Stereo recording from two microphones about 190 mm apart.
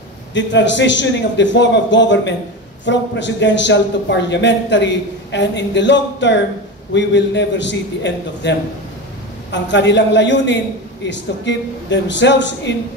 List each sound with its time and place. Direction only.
0.3 s a man's voice: 70° left (ahead or behind)